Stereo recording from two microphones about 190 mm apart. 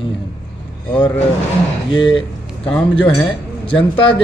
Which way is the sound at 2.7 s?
10° left (ahead or behind).